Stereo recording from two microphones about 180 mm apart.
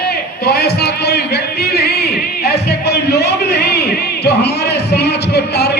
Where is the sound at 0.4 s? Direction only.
65° left (ahead or behind).